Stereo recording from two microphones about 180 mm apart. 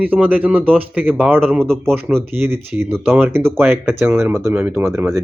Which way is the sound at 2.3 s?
15° right (ahead or behind).